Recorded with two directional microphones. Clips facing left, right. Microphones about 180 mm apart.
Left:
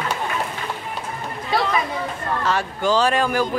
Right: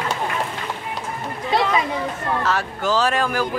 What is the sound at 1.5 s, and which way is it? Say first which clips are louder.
Chatter: right 2 dB; 20° right (ahead or behind).